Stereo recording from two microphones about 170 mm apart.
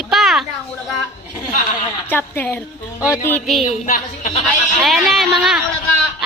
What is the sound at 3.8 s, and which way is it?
Speech, 50° left (ahead or behind).